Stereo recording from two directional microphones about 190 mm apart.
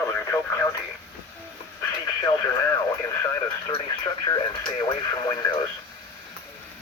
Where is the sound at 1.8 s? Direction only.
15° left (ahead or behind).